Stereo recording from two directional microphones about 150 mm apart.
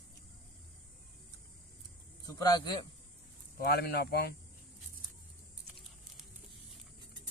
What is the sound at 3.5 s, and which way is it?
Speech, 90° left.